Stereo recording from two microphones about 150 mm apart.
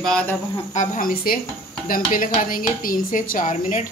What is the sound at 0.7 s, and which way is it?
Speech, 60° left (ahead or behind).